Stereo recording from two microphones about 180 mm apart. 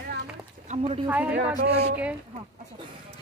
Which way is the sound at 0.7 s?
30° right (ahead or behind).